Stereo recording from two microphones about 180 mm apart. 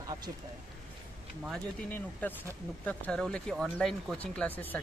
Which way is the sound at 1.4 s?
Centre (ahead or behind).